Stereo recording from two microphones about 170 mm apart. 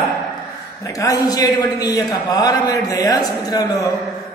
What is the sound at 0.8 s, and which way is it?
A man's voice, 20° left (ahead or behind).